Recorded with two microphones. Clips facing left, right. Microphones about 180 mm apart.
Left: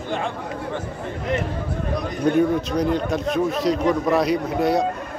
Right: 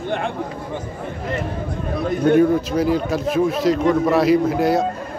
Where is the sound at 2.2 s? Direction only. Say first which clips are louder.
Right 4 dB; centre (ahead or behind).